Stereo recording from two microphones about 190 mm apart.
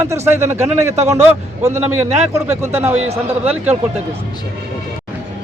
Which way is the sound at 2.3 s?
15° right (ahead or behind).